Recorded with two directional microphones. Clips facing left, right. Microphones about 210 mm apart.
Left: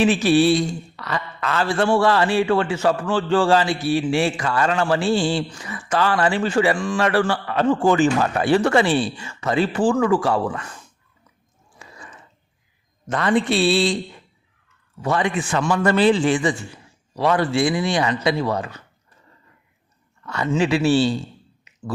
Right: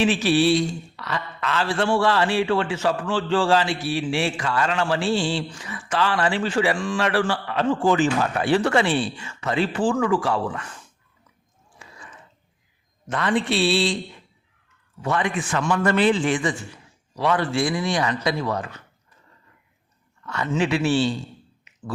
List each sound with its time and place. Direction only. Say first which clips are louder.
0.0 s a man's voice: left 3 dB; 45° left (ahead or behind)
13.1 s a man's voice: left 3 dB; 40° left (ahead or behind)
15.0 s a man's voice: left 3 dB; 30° left (ahead or behind)
20.2 s a man's voice: left 3 dB; 30° left (ahead or behind)